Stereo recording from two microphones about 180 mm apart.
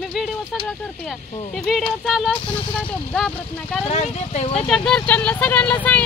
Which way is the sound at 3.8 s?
40° left (ahead or behind).